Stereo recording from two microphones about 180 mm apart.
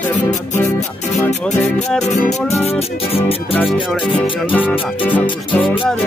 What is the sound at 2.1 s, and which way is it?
Music, 40° left (ahead or behind).